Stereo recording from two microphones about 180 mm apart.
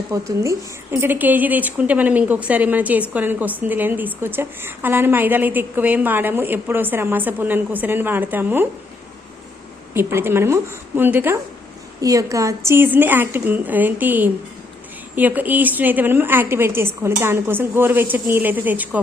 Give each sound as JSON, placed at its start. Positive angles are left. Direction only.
{"t": 0.1, "sound": "a woman's voice", "side_deg": -15}
{"t": 9.9, "sound": "a woman's voice", "side_deg": -15}